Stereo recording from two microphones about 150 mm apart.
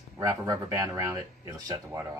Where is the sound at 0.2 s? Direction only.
20° right (ahead or behind).